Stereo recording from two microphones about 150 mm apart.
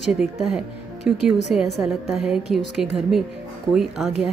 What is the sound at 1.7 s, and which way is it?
A woman's voice, centre (ahead or behind).